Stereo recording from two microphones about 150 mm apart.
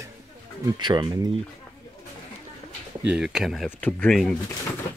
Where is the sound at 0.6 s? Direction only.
30° right (ahead or behind).